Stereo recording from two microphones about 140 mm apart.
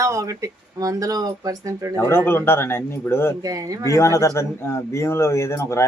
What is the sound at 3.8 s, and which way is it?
Speech, 20° left (ahead or behind).